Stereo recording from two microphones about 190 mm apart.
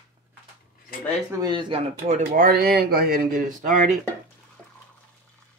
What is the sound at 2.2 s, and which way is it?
Speech, 55° right (ahead or behind).